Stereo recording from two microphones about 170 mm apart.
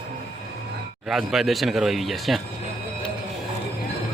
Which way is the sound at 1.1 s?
Centre (ahead or behind).